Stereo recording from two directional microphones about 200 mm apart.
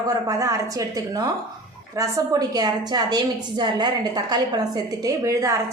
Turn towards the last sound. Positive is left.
turn(degrees=-15)  # may be behind; listen again after turning